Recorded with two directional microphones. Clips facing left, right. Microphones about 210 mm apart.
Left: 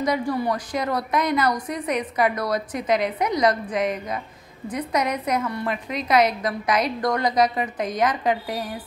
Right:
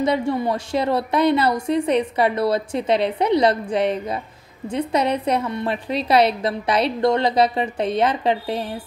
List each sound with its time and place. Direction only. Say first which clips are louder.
0.0 s a woman's voice: right 3 dB; 25° right (ahead or behind)